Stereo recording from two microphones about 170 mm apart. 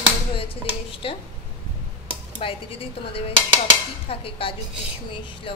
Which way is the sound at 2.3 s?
35° left (ahead or behind).